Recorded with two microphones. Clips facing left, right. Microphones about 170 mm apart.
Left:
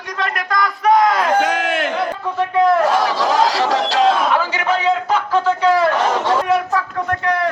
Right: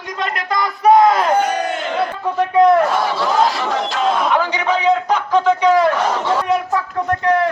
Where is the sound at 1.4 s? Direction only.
90° left.